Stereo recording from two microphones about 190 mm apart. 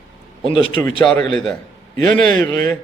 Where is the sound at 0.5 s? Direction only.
30° left (ahead or behind).